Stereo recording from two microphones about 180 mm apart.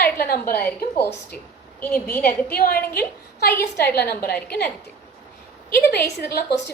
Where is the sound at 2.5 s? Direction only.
55° left (ahead or behind).